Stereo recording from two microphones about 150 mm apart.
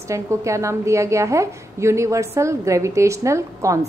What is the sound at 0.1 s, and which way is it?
A woman's voice, 20° right (ahead or behind).